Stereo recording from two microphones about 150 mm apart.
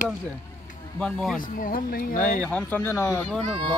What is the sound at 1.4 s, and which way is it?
Speech, 65° left (ahead or behind).